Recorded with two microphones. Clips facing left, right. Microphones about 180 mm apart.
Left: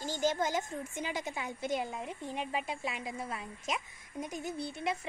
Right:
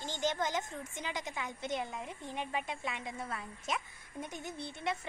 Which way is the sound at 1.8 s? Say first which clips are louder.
Left 3 dB; 25° left (ahead or behind).